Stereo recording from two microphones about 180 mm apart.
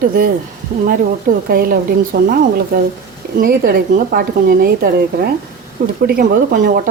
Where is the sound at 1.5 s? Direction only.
55° right (ahead or behind).